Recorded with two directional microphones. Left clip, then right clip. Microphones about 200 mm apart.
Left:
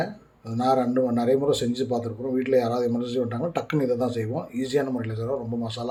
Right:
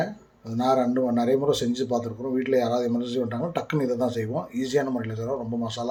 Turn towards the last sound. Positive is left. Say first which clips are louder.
# right 1 dB
turn(degrees=0)  # may be behind; listen again after turning